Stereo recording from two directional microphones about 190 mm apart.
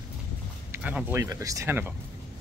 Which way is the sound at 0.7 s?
5° right (ahead or behind).